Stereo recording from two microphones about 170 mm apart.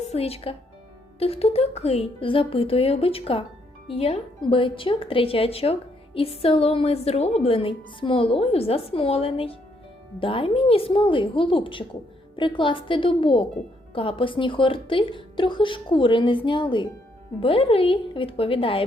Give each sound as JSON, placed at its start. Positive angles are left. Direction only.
{"t": 0.0, "sound": "a woman's voice", "side_deg": 35}